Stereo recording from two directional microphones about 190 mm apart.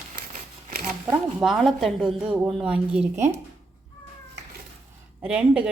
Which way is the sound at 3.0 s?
40° right (ahead or behind).